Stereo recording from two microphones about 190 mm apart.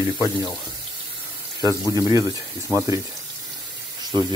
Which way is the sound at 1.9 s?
20° right (ahead or behind).